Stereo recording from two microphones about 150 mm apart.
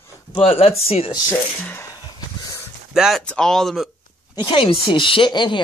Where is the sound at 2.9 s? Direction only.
5° right (ahead or behind).